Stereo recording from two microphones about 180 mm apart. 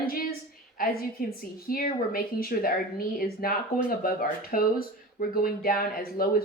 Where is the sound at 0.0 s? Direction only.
55° left (ahead or behind).